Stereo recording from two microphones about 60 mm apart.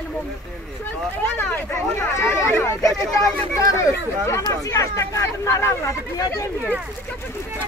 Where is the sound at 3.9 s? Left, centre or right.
Left.